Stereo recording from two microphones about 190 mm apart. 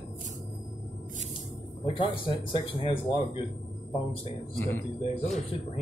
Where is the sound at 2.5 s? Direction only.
30° left (ahead or behind).